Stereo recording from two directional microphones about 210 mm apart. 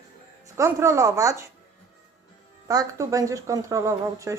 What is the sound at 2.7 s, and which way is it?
Speech, 15° right (ahead or behind).